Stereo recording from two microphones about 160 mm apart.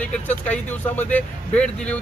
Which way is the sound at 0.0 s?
10° left (ahead or behind).